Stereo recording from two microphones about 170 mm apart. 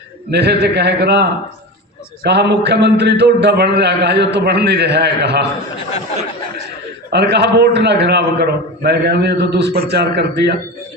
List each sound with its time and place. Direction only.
0.3 s a man's voice: 80° right
7.1 s a man's voice: 80° right